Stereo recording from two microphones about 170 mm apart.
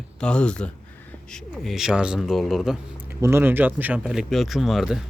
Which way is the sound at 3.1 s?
15° right (ahead or behind).